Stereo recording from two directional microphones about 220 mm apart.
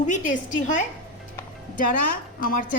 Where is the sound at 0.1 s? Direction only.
35° left (ahead or behind).